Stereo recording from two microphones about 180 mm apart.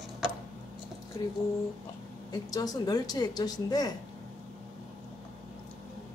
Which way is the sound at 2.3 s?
20° left (ahead or behind).